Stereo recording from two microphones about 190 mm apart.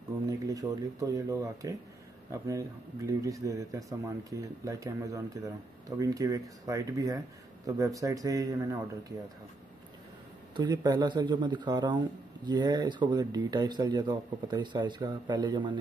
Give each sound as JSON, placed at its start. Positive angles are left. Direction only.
{"t": 0.3, "sound": "speech", "side_deg": -20}
{"t": 10.5, "sound": "speech", "side_deg": -20}